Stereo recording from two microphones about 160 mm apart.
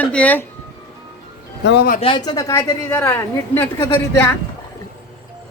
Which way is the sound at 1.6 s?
80° left.